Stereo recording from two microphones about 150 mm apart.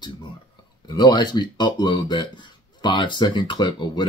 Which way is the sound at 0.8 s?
30° left (ahead or behind).